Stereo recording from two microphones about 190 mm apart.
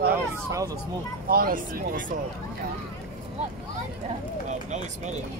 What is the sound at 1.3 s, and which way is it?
Speech, 50° right (ahead or behind).